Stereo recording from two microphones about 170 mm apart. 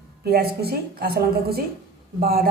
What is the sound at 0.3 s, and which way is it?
Speech, 65° right (ahead or behind).